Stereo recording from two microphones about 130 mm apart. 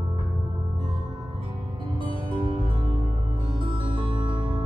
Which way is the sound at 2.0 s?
40° right (ahead or behind).